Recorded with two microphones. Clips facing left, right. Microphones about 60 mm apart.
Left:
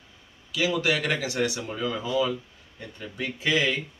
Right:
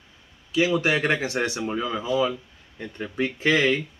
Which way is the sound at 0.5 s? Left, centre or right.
Right.